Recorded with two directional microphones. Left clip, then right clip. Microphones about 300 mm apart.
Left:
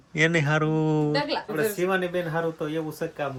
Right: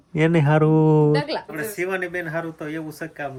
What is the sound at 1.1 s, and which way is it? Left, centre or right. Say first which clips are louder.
Speech: right 4 dB; right.